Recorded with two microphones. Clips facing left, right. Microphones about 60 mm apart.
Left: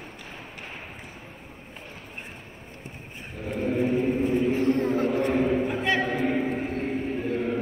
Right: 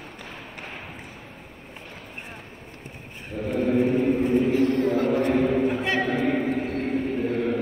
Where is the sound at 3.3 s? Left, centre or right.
Right.